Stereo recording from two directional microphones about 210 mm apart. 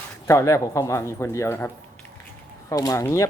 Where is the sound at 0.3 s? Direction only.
15° left (ahead or behind).